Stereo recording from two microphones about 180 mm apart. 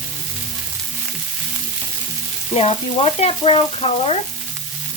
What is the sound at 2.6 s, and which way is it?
Frying, 35° left (ahead or behind).